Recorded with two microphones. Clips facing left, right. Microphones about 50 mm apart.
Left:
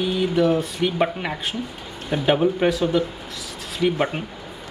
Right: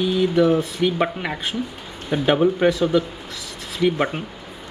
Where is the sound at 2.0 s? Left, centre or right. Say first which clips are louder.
Right 1 dB; centre.